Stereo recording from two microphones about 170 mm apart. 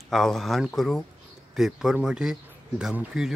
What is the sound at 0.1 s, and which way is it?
Speech, centre (ahead or behind).